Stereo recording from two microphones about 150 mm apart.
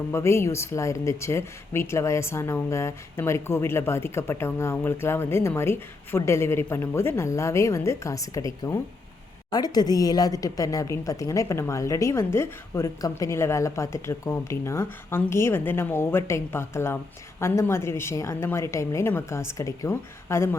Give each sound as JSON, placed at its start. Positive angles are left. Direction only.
{"t": 0.1, "sound": "a woman's voice", "side_deg": 15}